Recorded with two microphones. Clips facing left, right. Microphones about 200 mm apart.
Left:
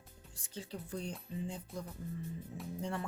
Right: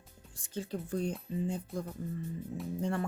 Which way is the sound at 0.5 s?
50° right (ahead or behind).